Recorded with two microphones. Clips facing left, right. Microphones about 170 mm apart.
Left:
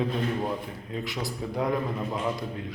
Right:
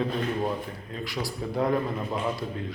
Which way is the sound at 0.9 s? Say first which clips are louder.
Left 1 dB; 20° left (ahead or behind).